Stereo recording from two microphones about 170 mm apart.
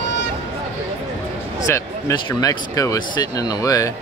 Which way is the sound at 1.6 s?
20° left (ahead or behind).